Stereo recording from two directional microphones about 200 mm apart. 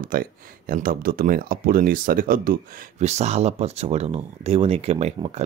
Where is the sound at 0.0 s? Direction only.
45° right (ahead or behind).